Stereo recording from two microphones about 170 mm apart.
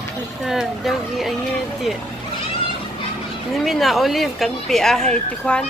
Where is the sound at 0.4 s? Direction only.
Centre (ahead or behind).